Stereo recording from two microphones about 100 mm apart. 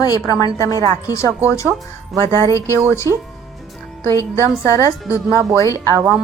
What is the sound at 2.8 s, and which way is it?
Speech, 25° left (ahead or behind).